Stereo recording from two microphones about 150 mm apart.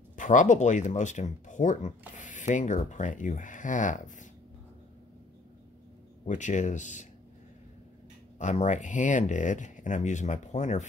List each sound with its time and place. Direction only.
0.1 s speech: 60° left (ahead or behind)
6.2 s speech: 55° left (ahead or behind)
8.4 s speech: 50° left (ahead or behind)